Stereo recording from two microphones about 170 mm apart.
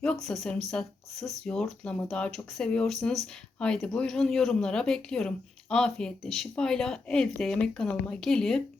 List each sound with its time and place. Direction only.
0.0 s speech: 5° left (ahead or behind)